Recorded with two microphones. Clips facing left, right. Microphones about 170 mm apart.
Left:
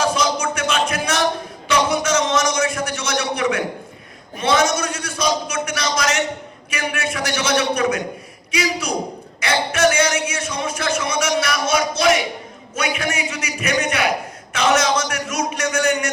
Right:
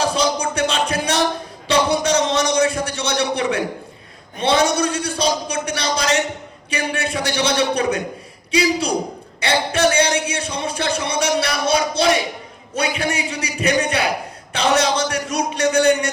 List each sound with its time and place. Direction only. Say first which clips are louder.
0.0 s music: even; 35° right (ahead or behind)
1.6 s a man's voice: right 2 dB; 30° right (ahead or behind)